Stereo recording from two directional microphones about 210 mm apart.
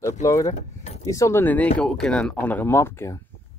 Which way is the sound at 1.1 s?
15° left (ahead or behind).